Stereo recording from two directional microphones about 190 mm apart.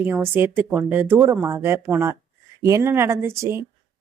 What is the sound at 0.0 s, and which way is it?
Speech, 10° right (ahead or behind).